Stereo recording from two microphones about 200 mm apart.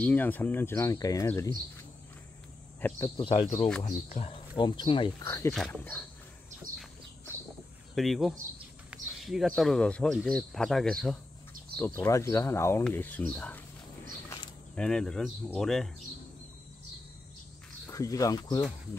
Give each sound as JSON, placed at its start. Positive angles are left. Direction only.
{"t": 0.0, "sound": "speech", "side_deg": 10}
{"t": 2.8, "sound": "speech", "side_deg": 10}
{"t": 3.2, "sound": "speech", "side_deg": 30}
{"t": 5.5, "sound": "speech", "side_deg": 5}
{"t": 7.9, "sound": "speech", "side_deg": 0}
{"t": 14.8, "sound": "speech", "side_deg": 5}
{"t": 17.8, "sound": "speech", "side_deg": 15}